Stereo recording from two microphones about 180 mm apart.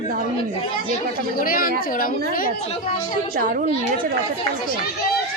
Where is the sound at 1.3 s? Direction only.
50° left (ahead or behind).